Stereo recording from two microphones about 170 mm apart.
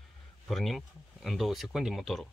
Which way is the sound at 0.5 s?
Centre (ahead or behind).